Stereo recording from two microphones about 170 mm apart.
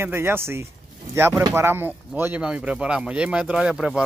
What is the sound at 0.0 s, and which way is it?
Speech, 15° right (ahead or behind).